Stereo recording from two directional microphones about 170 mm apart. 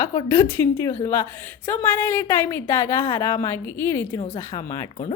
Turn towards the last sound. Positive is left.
turn(degrees=20)  # may be behind; listen again after turning